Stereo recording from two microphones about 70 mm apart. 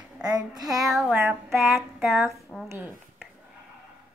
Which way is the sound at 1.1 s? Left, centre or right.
Right.